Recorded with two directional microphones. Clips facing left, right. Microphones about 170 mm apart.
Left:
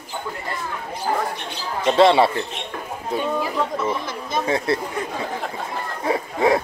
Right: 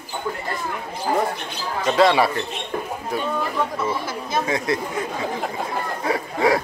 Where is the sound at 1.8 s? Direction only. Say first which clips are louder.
Left 2 dB; 25° left (ahead or behind).